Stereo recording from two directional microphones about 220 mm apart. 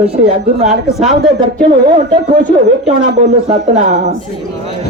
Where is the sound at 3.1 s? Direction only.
30° right (ahead or behind).